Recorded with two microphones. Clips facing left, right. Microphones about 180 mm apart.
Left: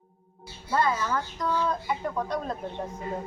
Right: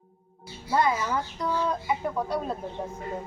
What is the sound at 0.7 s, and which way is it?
A woman's voice, 15° right (ahead or behind).